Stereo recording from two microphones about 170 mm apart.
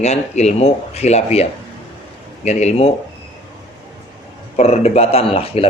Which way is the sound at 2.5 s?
40° left (ahead or behind).